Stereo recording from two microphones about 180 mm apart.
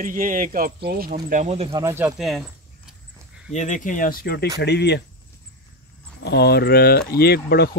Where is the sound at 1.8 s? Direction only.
15° right (ahead or behind).